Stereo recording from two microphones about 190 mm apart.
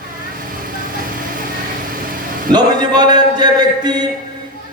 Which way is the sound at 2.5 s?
20° right (ahead or behind).